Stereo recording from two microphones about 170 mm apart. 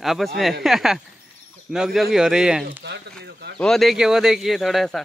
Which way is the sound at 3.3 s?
70° right (ahead or behind).